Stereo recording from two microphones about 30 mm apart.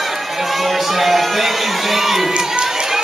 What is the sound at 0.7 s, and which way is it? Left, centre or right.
Crowd, centre.